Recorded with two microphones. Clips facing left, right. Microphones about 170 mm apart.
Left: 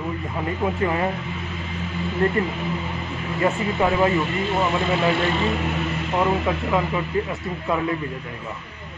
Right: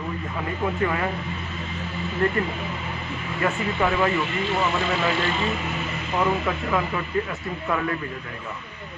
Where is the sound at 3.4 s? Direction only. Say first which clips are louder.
Left 3 dB; 20° left (ahead or behind).